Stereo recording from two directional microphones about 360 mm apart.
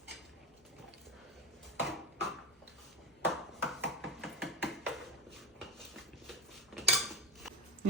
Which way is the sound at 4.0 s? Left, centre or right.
Centre.